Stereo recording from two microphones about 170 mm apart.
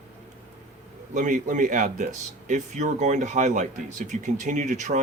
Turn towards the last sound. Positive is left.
turn(degrees=-45)  # may be behind; listen again after turning